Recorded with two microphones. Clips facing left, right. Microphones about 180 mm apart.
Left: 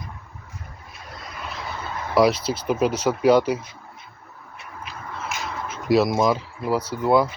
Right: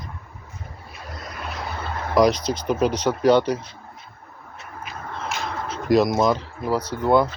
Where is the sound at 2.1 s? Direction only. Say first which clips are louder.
Even; 5° left (ahead or behind).